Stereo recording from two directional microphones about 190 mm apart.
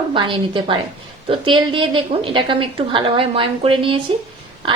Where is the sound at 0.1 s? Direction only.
25° right (ahead or behind).